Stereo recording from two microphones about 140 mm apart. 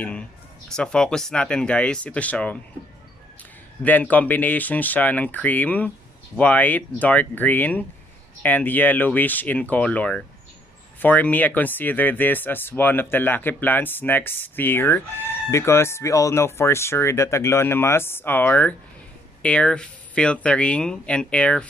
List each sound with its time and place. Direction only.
0.7 s speech: 5° left (ahead or behind)
3.8 s speech: 10° left (ahead or behind)